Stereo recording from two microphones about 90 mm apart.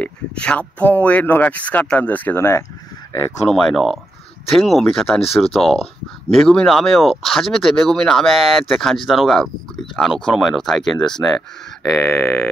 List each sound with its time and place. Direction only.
0.0 s speech: 15° left (ahead or behind)
3.4 s speech: 5° left (ahead or behind)